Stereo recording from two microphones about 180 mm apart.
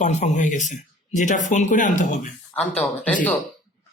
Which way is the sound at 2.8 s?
5° left (ahead or behind).